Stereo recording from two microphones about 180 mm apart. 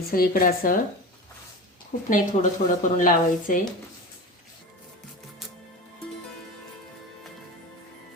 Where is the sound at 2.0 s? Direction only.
45° left (ahead or behind).